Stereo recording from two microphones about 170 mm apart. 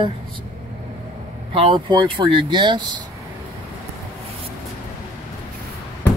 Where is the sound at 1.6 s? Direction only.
30° right (ahead or behind).